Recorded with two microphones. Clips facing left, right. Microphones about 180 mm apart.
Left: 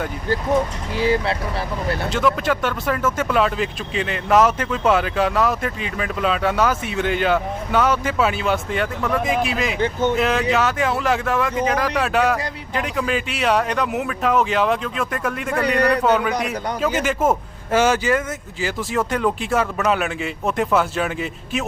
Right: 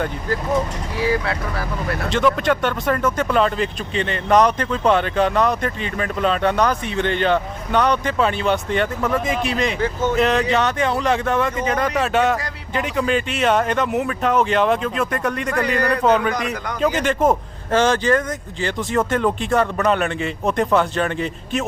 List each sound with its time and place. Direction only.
0.9 s speech: 25° left (ahead or behind)
2.0 s speech: centre (ahead or behind)